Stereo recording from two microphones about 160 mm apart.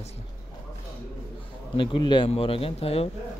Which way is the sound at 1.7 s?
30° left (ahead or behind).